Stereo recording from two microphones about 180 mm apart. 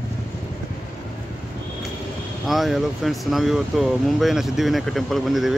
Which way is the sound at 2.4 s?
Centre (ahead or behind).